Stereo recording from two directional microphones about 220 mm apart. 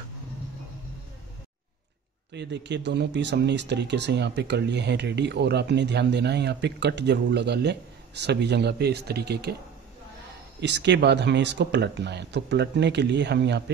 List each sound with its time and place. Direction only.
2.3 s speech: 50° right (ahead or behind)
10.6 s speech: 50° right (ahead or behind)